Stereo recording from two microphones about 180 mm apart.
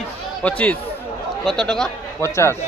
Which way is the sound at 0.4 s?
5° left (ahead or behind).